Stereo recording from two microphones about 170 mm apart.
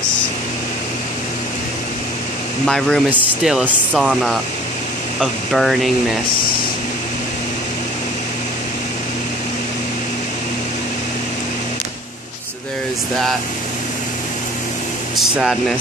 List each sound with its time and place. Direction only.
2.6 s speech: 5° left (ahead or behind)
3.1 s speech: 5° right (ahead or behind)
15.1 s speech: centre (ahead or behind)